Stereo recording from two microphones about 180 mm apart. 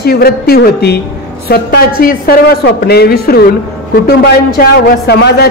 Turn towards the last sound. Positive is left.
turn(degrees=65)  # may be behind; listen again after turning